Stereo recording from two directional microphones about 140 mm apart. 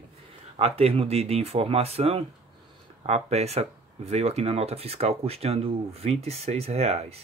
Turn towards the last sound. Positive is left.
turn(degrees=-50)  # may be behind; listen again after turning